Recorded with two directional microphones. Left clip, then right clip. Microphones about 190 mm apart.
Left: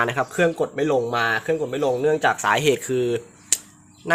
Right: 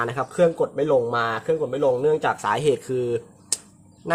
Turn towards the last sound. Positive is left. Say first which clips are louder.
# left 3 dB
turn(degrees=0)  # may be behind; listen again after turning